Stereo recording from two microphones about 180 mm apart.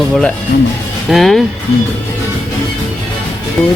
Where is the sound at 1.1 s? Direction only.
Centre (ahead or behind).